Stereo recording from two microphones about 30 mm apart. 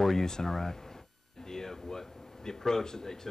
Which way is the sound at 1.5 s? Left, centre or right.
Centre.